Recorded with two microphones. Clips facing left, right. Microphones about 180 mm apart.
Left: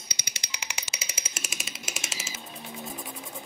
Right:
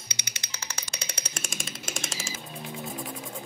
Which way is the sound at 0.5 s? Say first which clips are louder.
Even; 10° left (ahead or behind).